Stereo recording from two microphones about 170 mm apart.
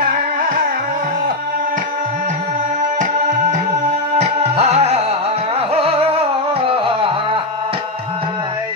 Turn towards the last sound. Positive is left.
turn(degrees=-35)  # may be behind; listen again after turning